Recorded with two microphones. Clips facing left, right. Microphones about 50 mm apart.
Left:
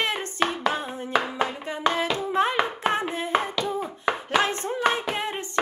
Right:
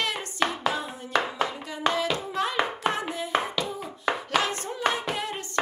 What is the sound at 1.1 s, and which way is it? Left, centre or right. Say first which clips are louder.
Hands: left 1 dB; centre.